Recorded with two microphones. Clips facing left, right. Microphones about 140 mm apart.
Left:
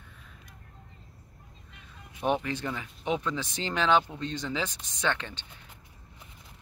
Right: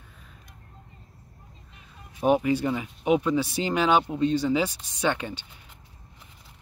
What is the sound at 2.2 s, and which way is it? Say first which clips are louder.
Speech: right 7 dB; 10° right (ahead or behind).